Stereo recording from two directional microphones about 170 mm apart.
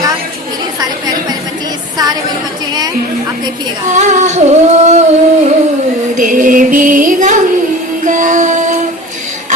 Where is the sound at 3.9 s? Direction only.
45° right (ahead or behind).